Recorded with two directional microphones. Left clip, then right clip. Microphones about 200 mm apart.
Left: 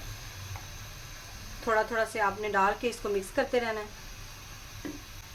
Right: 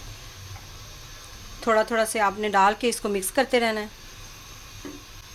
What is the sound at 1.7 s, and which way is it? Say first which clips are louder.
Speech: right 6 dB; 50° right (ahead or behind).